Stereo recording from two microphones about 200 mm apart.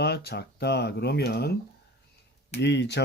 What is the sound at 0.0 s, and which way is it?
Speech, 55° left (ahead or behind).